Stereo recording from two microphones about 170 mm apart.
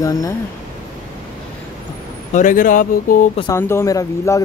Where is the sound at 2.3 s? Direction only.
50° left (ahead or behind).